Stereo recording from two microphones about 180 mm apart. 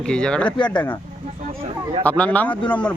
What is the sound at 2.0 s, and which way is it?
Speech, 10° left (ahead or behind).